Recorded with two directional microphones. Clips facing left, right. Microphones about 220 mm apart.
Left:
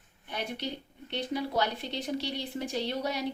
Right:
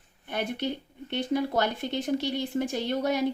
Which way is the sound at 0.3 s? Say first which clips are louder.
Right 5 dB; 50° right (ahead or behind).